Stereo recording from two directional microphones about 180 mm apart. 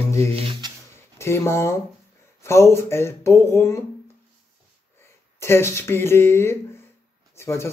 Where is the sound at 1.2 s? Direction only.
15° left (ahead or behind).